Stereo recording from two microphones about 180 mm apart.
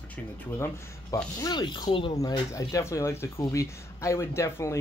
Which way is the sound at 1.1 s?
20° left (ahead or behind).